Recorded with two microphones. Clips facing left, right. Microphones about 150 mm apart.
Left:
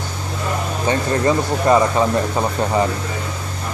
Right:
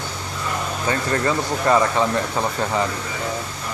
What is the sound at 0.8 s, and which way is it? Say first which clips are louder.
Speech: left 4 dB; 20° left (ahead or behind).